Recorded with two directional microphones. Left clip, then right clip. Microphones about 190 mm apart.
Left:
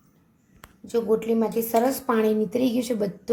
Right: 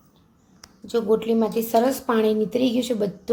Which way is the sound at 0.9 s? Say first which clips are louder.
Right 2 dB; 5° right (ahead or behind).